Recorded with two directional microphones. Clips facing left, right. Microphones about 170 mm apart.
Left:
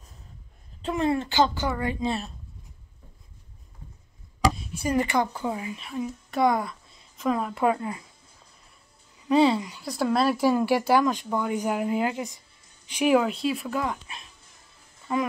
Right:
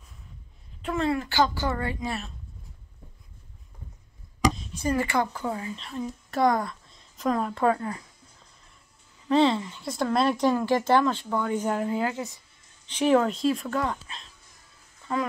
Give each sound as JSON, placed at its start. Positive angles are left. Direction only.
{"t": 0.8, "sound": "speech", "side_deg": 25}
{"t": 2.0, "sound": "a woman's voice", "side_deg": 30}
{"t": 4.6, "sound": "a woman's voice", "side_deg": 10}
{"t": 9.3, "sound": "speech", "side_deg": 10}